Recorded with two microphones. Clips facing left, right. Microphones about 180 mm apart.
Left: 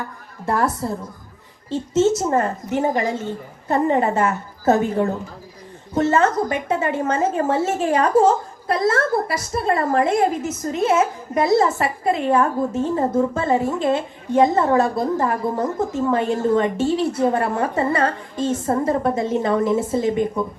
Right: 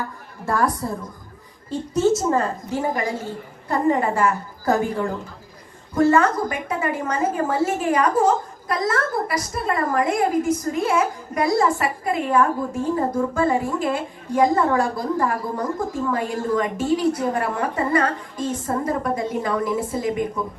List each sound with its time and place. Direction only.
0.4 s a woman's voice: 25° left (ahead or behind)